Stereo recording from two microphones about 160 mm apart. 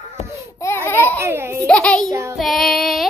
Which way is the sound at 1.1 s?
15° right (ahead or behind).